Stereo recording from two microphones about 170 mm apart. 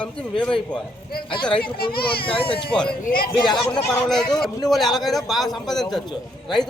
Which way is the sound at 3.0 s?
60° left (ahead or behind).